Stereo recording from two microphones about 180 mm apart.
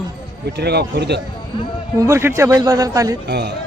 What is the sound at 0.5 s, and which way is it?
Speech, 65° right (ahead or behind).